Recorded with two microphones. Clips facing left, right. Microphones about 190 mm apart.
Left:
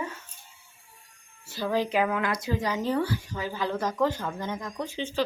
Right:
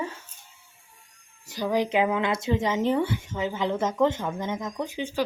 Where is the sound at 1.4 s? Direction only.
15° right (ahead or behind).